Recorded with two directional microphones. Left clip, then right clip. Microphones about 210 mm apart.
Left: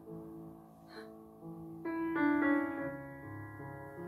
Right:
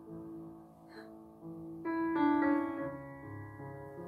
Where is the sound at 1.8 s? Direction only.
30° right (ahead or behind).